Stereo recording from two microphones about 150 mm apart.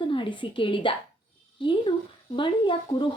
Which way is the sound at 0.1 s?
35° left (ahead or behind).